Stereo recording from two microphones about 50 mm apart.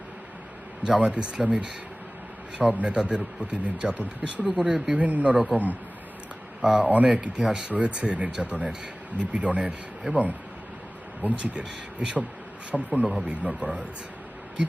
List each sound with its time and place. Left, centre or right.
0.8 s speech: centre
6.6 s speech: centre
6.8 s speech: right
7.4 s speech: centre
7.7 s speech: right